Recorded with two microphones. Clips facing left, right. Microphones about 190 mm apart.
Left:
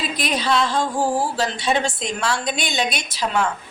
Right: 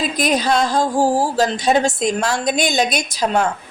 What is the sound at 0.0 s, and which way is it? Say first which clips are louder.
A woman's voice: right 5 dB; 40° right (ahead or behind).